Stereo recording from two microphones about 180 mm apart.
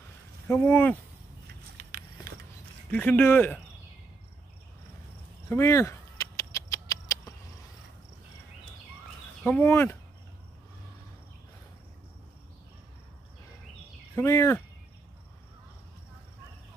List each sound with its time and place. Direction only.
0.5 s speech: 10° left (ahead or behind)
1.5 s a sound: 55° right (ahead or behind)
2.9 s speech: 10° left (ahead or behind)
5.5 s a sound: 15° left (ahead or behind)
9.4 s speech: 10° left (ahead or behind)
14.1 s speech: 15° left (ahead or behind)